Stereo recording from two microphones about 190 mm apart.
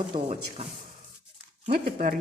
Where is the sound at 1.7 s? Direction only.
45° right (ahead or behind).